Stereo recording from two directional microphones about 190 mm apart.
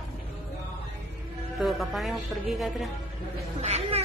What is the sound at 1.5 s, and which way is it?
Speech, centre (ahead or behind).